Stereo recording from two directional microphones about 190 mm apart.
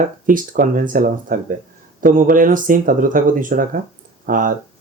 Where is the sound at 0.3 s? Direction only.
45° right (ahead or behind).